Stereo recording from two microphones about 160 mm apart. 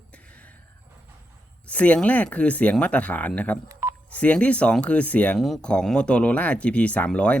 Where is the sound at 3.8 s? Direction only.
15° right (ahead or behind).